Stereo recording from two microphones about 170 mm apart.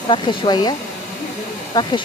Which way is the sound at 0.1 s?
25° left (ahead or behind).